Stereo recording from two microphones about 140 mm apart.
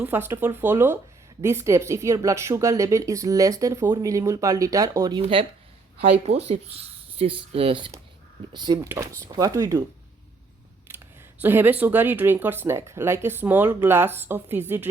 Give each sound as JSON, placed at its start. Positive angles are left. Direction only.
{"t": 0.0, "sound": "a woman's voice", "side_deg": -15}
{"t": 6.1, "sound": "speech", "side_deg": -50}
{"t": 8.5, "sound": "a woman's voice", "side_deg": -30}
{"t": 10.8, "sound": "speech", "side_deg": -15}